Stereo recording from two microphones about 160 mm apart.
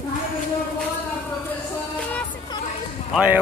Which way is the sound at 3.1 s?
10° right (ahead or behind).